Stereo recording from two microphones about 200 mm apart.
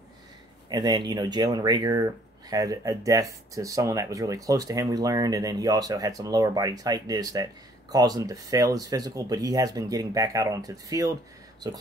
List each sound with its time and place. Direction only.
0.7 s speech: 20° right (ahead or behind)